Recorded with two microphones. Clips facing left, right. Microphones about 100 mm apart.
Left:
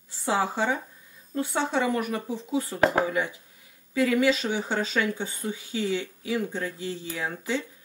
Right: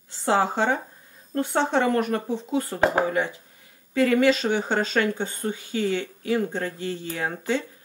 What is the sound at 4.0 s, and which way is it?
Speech, 45° right (ahead or behind).